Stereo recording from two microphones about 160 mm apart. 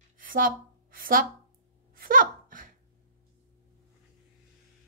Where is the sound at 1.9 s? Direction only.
65° right (ahead or behind).